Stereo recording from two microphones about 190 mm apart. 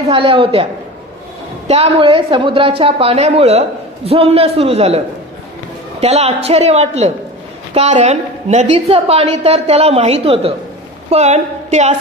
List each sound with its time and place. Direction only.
0.1 s a woman's voice: 25° right (ahead or behind)
1.7 s a woman's voice: 30° right (ahead or behind)